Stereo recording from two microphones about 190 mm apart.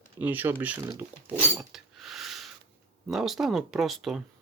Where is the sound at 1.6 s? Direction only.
Centre (ahead or behind).